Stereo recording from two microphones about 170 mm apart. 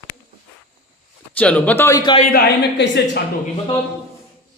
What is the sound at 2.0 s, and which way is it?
Speech, 25° left (ahead or behind).